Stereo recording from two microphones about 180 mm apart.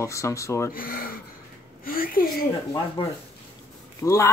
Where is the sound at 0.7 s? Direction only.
50° left (ahead or behind).